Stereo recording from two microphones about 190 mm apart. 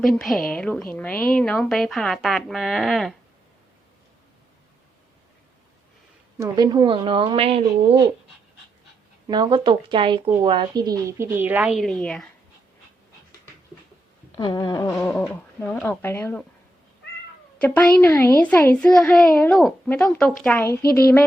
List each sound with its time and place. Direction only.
0.0 s speech: centre (ahead or behind)
6.4 s speech: 20° right (ahead or behind)
9.2 s a woman's voice: 25° right (ahead or behind); by 12.3 s 5° left (ahead or behind)
14.3 s a sound: 20° left (ahead or behind)
14.9 s a child's voice: 5° left (ahead or behind)
17.6 s a child's voice: 10° left (ahead or behind)